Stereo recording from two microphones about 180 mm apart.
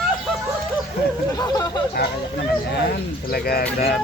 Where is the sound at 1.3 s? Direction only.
20° left (ahead or behind).